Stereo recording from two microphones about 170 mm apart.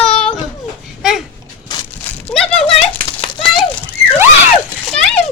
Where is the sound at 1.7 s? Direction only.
25° left (ahead or behind).